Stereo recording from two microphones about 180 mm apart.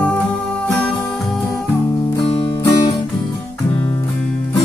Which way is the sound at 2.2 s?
30° left (ahead or behind).